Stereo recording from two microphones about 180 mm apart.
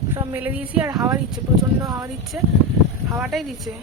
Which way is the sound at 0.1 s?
15° right (ahead or behind).